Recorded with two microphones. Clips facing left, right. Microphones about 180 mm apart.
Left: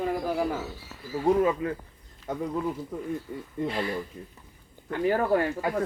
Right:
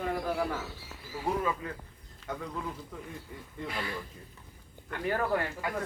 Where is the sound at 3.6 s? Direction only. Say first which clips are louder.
Left 7 dB; 30° left (ahead or behind).